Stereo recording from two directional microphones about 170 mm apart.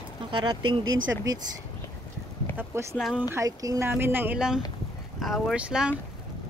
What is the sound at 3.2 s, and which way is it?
Speech, 20° right (ahead or behind).